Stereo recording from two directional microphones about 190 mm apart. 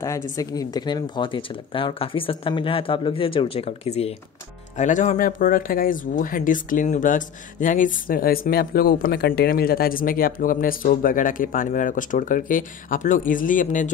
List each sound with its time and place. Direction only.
0.0 s speech: 15° left (ahead or behind); by 13.8 s 45° left (ahead or behind)